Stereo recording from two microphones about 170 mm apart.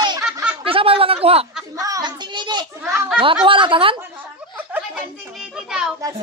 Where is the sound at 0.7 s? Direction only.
35° right (ahead or behind).